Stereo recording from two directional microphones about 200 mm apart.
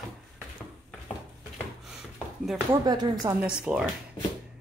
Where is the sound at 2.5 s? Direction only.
20° right (ahead or behind).